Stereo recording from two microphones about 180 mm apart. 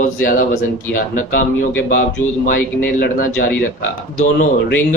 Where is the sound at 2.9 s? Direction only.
50° left (ahead or behind).